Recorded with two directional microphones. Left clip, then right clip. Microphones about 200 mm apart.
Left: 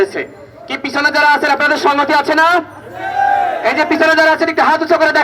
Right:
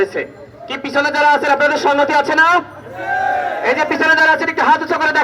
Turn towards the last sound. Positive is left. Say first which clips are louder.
# left 2 dB
turn(degrees=30)  # may be behind; listen again after turning